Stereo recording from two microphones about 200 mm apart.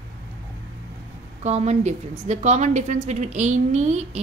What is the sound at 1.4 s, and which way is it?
A woman's voice, 35° right (ahead or behind).